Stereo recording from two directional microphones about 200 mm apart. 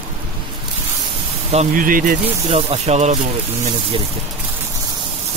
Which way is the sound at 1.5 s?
40° right (ahead or behind).